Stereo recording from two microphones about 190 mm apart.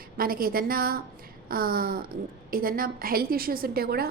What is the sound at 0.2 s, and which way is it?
A woman's voice, 50° right (ahead or behind).